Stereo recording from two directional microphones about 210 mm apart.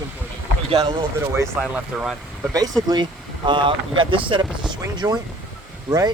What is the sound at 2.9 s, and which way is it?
Speech, 20° right (ahead or behind).